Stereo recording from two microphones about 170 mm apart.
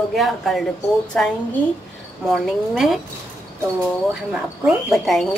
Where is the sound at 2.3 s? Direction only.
Centre (ahead or behind).